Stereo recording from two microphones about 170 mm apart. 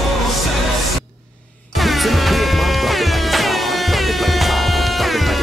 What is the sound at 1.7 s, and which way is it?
Music, centre (ahead or behind).